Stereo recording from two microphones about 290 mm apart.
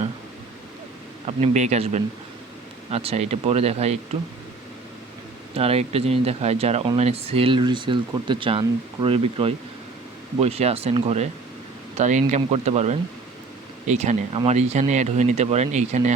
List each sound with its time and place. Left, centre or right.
1.4 s speech: right
5.5 s speech: centre